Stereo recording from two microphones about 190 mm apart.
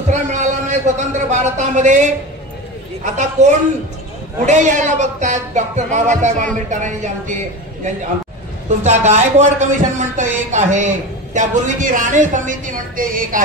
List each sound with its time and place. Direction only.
0.1 s a man's voice: 40° right (ahead or behind)
3.2 s speech: 40° right (ahead or behind)
8.6 s speech: 35° right (ahead or behind)